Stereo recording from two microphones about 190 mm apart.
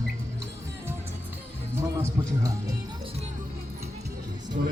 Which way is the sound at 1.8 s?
20° right (ahead or behind).